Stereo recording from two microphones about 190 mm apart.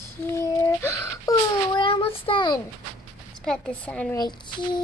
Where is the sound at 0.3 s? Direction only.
15° left (ahead or behind).